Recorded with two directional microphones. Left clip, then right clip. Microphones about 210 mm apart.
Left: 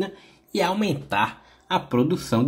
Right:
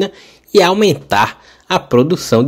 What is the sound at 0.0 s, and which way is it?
Speech, 40° right (ahead or behind).